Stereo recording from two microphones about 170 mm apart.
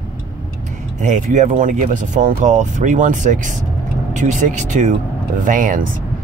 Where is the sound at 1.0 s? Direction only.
45° right (ahead or behind).